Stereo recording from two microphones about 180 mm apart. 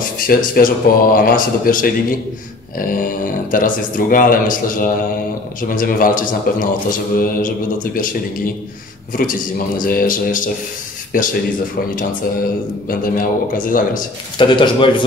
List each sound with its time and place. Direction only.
0.3 s a man's voice: 50° left (ahead or behind)
9.8 s a man's voice: 50° left (ahead or behind)
12.8 s a man's voice: 50° left (ahead or behind)
14.4 s a man's voice: 25° left (ahead or behind)